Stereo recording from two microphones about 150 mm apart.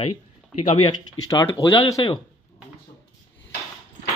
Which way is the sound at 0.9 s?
25° left (ahead or behind).